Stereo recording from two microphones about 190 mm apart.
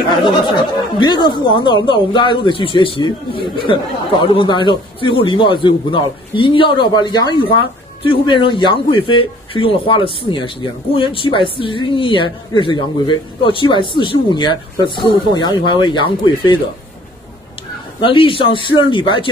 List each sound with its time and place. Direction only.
0.1 s speech: 25° left (ahead or behind)
18.0 s speech: 25° left (ahead or behind)